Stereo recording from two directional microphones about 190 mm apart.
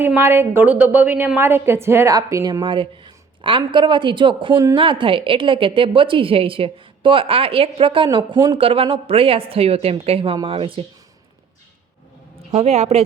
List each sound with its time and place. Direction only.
0.0 s a woman's voice: 10° right (ahead or behind); by 10.8 s 30° right (ahead or behind)
12.4 s speech: 35° right (ahead or behind)